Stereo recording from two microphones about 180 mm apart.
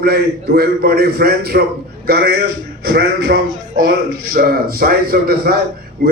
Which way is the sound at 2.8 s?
60° right (ahead or behind).